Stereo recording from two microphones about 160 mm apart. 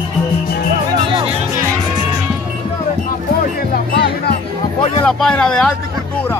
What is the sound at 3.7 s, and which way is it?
Music, 80° left.